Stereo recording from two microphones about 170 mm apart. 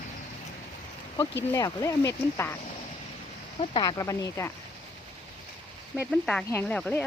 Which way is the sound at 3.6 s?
25° left (ahead or behind).